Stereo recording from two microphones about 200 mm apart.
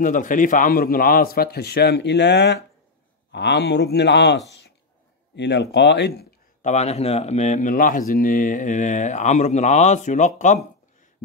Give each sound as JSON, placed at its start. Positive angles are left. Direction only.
{"t": 0.0, "sound": "a man's voice", "side_deg": 40}
{"t": 6.6, "sound": "speech", "side_deg": 35}